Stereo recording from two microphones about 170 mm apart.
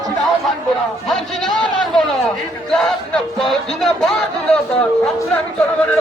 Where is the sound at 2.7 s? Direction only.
5° left (ahead or behind).